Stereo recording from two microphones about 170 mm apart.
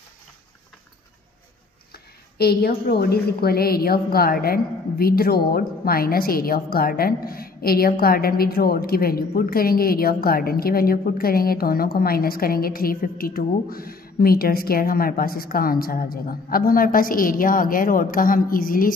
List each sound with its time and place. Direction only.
2.3 s a woman's voice: 65° left (ahead or behind)